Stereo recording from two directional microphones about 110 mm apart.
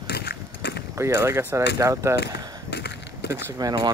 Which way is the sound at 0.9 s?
25° right (ahead or behind).